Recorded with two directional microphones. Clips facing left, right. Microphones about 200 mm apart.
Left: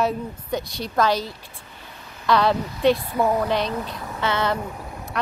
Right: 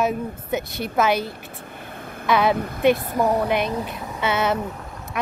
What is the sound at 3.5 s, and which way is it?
Speech, 15° right (ahead or behind).